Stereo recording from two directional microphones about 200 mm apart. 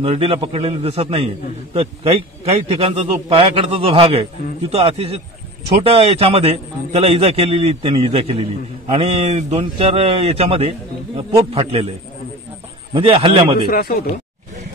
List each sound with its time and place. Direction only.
0.0 s a man's voice: 30° right (ahead or behind)
12.9 s a man's voice: 25° right (ahead or behind)
13.7 s speech: 50° left (ahead or behind)